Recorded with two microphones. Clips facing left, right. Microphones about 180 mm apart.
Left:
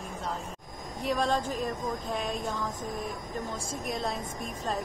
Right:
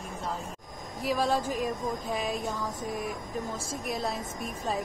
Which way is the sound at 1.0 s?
5° right (ahead or behind).